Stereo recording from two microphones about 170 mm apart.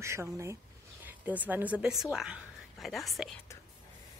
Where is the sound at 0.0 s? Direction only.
15° right (ahead or behind); by 3.3 s centre (ahead or behind).